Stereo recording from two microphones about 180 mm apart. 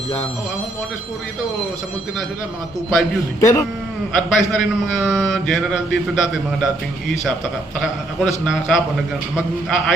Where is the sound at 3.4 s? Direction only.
15° left (ahead or behind).